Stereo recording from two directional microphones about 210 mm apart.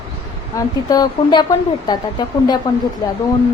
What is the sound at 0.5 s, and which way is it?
Speech, 15° left (ahead or behind).